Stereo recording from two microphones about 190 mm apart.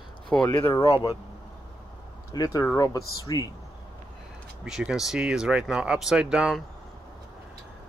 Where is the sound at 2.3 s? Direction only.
20° left (ahead or behind).